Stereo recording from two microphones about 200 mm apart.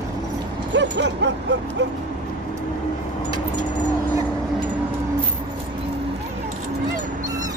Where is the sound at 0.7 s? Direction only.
60° right (ahead or behind).